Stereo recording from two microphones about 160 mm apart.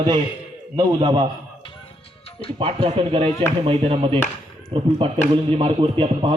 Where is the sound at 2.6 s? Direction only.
35° right (ahead or behind).